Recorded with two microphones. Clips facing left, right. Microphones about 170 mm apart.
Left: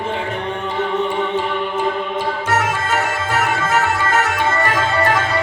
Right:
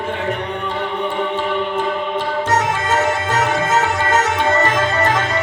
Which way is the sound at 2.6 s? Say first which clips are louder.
Right 2 dB; 20° right (ahead or behind).